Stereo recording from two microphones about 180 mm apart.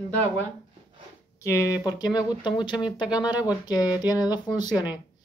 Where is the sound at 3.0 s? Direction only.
5° right (ahead or behind).